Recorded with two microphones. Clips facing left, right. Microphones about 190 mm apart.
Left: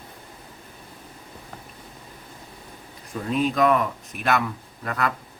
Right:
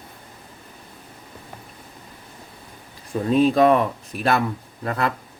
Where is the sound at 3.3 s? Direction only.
30° right (ahead or behind).